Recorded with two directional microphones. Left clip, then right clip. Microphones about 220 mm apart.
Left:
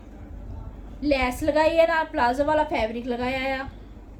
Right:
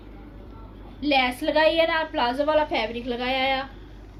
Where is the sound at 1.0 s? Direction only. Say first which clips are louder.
Right 2 dB; 25° left (ahead or behind).